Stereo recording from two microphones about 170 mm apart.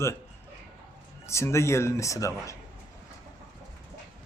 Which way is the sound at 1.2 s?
15° left (ahead or behind).